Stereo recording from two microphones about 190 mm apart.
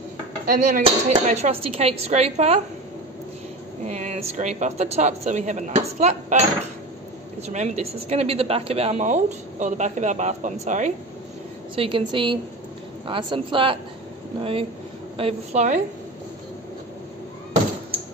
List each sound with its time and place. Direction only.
0.5 s a woman's voice: 45° right (ahead or behind)
3.8 s a woman's voice: 35° right (ahead or behind)
11.7 s a woman's voice: 25° right (ahead or behind)